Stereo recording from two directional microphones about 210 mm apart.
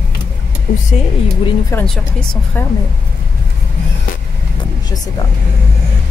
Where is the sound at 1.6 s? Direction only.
5° left (ahead or behind).